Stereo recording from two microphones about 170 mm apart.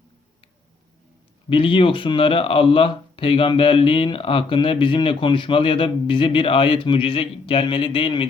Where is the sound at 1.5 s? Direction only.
30° left (ahead or behind).